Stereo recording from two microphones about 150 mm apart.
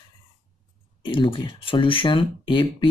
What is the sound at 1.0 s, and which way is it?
Speech, 35° left (ahead or behind).